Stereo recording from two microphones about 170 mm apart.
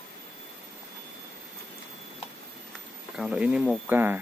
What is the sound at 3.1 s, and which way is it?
Speech, 5° right (ahead or behind).